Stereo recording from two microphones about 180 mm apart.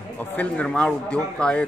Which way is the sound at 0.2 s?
10° left (ahead or behind).